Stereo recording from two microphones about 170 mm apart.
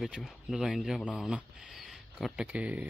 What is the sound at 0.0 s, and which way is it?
Speech, centre (ahead or behind).